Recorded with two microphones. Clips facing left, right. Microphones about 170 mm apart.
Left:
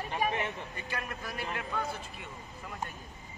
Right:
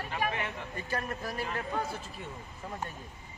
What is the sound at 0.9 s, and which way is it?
Speech, 35° right (ahead or behind).